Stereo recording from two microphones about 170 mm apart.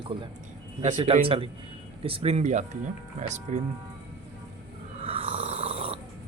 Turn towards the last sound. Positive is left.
turn(degrees=-35)  # may be behind; listen again after turning